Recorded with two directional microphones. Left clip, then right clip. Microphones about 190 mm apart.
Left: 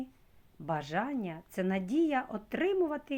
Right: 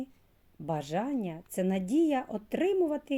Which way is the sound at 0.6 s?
35° right (ahead or behind).